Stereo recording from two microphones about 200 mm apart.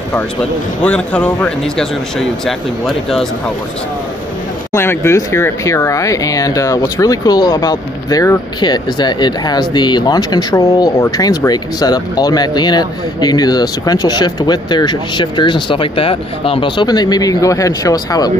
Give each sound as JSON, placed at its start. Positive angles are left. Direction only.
{"t": 0.1, "sound": "speech", "side_deg": 5}
{"t": 4.7, "sound": "speech", "side_deg": 10}